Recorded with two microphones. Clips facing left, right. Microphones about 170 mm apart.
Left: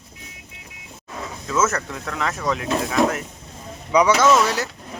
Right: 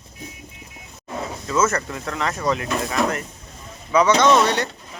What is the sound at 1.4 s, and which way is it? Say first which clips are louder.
Speech: right 1 dB; centre (ahead or behind).